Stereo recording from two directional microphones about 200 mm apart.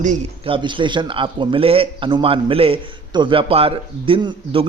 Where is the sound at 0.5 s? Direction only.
25° right (ahead or behind).